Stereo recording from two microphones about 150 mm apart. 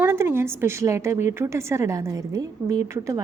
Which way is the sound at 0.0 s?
15° right (ahead or behind).